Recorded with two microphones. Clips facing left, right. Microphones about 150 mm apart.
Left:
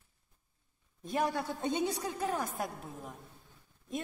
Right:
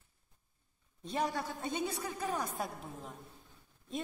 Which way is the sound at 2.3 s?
Centre (ahead or behind).